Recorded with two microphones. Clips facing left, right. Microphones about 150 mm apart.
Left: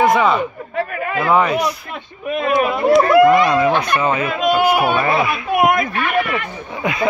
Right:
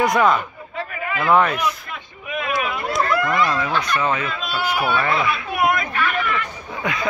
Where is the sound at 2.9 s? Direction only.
20° left (ahead or behind).